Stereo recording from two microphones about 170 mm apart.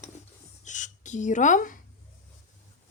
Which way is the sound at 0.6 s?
45° left (ahead or behind).